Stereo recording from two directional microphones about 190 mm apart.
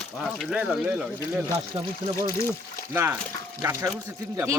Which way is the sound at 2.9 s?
15° right (ahead or behind).